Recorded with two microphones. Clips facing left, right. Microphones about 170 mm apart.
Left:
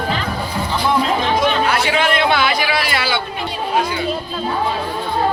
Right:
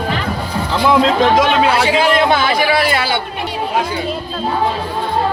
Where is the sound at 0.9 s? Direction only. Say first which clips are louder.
Right 6 dB; 90° right.